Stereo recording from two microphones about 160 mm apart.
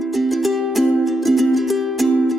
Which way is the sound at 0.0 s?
Centre (ahead or behind).